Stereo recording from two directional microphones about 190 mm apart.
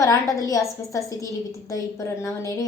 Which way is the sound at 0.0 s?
20° left (ahead or behind).